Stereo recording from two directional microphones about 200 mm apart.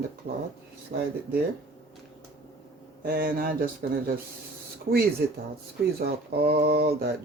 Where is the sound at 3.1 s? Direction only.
45° right (ahead or behind).